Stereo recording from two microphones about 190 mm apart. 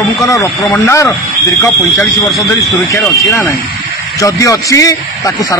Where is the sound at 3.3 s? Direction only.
15° left (ahead or behind).